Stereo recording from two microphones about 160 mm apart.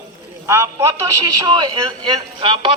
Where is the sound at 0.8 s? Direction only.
30° right (ahead or behind).